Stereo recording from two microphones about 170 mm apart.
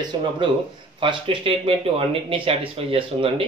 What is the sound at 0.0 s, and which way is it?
Speech, 30° right (ahead or behind).